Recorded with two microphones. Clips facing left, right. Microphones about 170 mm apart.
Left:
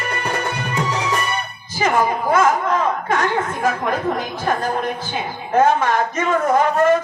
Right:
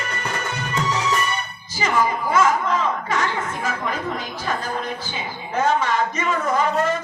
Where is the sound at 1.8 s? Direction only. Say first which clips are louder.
Left 3 dB; 55° left (ahead or behind).